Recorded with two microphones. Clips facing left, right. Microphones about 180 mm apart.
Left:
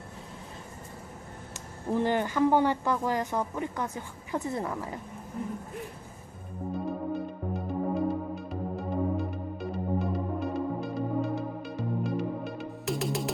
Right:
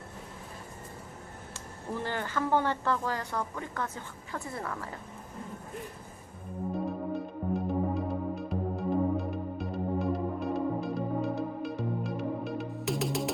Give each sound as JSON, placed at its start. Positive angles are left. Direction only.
{"t": 1.9, "sound": "a woman's voice", "side_deg": 20}
{"t": 6.7, "sound": "music", "side_deg": 0}